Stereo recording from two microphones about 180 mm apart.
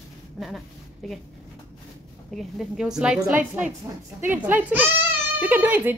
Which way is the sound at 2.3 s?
Centre (ahead or behind).